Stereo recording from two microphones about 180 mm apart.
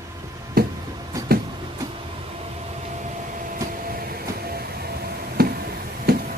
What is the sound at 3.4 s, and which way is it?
Vehicle, 50° right (ahead or behind).